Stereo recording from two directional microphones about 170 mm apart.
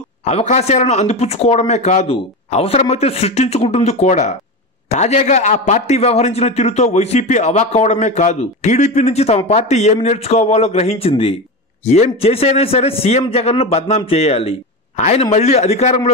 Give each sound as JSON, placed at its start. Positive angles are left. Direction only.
{"t": 0.2, "sound": "a man's voice", "side_deg": 40}